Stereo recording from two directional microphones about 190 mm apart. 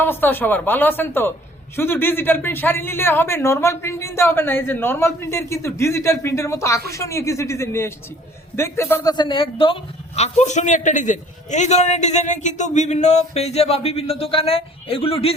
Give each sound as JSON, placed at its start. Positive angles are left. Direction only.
{"t": 0.0, "sound": "a man's voice", "side_deg": 10}